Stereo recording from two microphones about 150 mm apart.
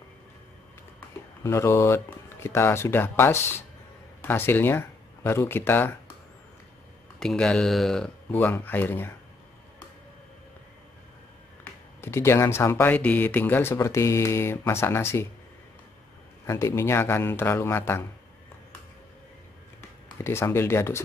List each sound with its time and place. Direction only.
1.4 s speech: 20° left (ahead or behind)
7.2 s speech: 5° left (ahead or behind)
11.6 s speech: 15° left (ahead or behind)
16.4 s speech: 20° left (ahead or behind)
20.2 s speech: 15° left (ahead or behind)